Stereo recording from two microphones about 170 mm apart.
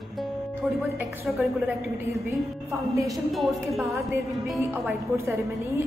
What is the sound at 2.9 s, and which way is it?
Speech, 20° right (ahead or behind).